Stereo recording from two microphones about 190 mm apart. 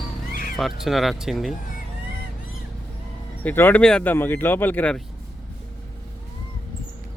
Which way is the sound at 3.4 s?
10° left (ahead or behind).